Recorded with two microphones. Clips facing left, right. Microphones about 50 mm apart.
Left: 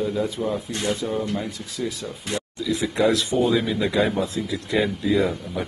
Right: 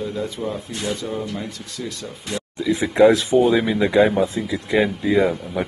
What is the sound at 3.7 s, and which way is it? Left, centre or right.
Speech, right.